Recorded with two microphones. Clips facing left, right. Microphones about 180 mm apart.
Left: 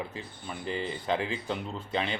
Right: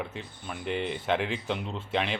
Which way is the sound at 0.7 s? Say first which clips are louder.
Right 3 dB; 75° right (ahead or behind).